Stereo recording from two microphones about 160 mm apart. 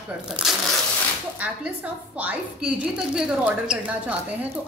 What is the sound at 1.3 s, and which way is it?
A woman's voice, 10° right (ahead or behind).